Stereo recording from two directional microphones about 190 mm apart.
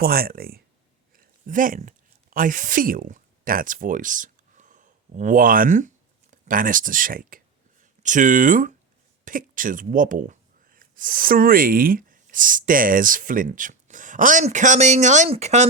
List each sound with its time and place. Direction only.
0.0 s speech: 50° right (ahead or behind)
1.1 s a sound: 45° right (ahead or behind)
2.3 s speech: 45° right (ahead or behind)